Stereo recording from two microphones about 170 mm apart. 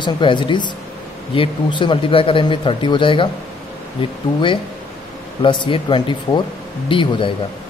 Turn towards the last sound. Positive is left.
turn(degrees=30)  # may be behind; listen again after turning